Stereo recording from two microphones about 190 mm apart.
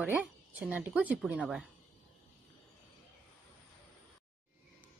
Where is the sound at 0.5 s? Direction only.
5° right (ahead or behind).